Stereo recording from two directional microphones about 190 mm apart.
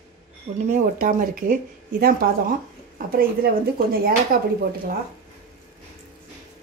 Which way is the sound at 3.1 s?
50° right (ahead or behind).